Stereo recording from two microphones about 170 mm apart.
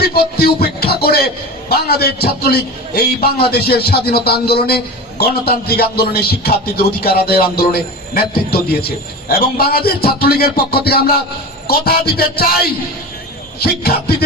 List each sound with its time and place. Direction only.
0.0 s a man's voice: 65° left (ahead or behind)
13.6 s speech: 65° left (ahead or behind)